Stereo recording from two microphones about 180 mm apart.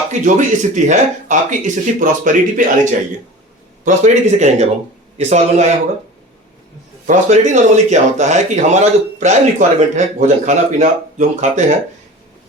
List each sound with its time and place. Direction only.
0.1 s speech: 45° right (ahead or behind)
3.8 s speech: 40° right (ahead or behind)
7.1 s speech: 40° right (ahead or behind)